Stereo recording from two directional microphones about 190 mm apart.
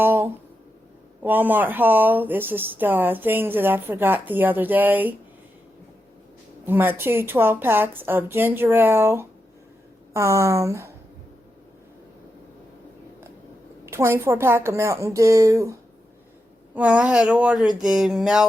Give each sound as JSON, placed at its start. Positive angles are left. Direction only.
{"t": 0.0, "sound": "a sound", "side_deg": -10}
{"t": 1.2, "sound": "speech", "side_deg": -10}
{"t": 6.7, "sound": "speech", "side_deg": -10}
{"t": 13.8, "sound": "speech", "side_deg": -15}